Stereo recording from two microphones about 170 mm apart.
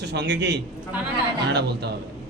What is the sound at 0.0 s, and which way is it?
Speech, 80° right.